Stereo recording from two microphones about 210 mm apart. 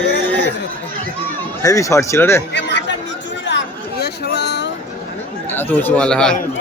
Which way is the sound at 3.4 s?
55° left (ahead or behind).